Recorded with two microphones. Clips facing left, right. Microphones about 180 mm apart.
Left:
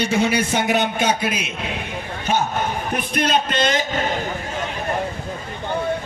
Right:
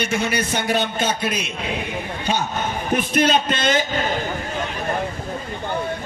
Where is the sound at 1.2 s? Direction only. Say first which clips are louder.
Even; 5° left (ahead or behind).